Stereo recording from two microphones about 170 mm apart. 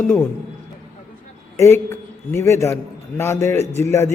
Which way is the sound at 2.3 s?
15° left (ahead or behind).